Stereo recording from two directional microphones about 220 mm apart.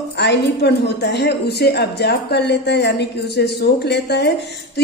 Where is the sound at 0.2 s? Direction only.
50° left (ahead or behind).